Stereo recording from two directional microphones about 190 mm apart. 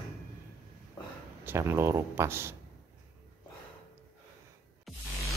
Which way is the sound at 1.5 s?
15° right (ahead or behind).